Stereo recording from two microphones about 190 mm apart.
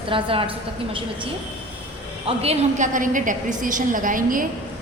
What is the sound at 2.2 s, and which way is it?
A woman's voice, 35° right (ahead or behind).